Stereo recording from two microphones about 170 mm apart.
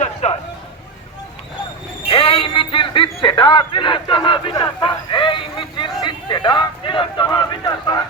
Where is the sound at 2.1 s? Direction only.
35° left (ahead or behind).